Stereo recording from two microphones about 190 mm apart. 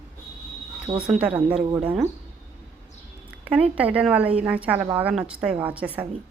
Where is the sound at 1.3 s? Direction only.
30° right (ahead or behind).